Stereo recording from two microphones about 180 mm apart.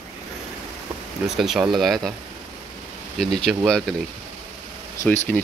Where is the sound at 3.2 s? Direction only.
Centre (ahead or behind).